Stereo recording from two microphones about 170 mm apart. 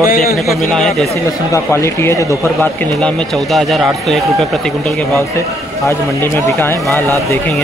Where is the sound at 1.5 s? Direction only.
15° left (ahead or behind).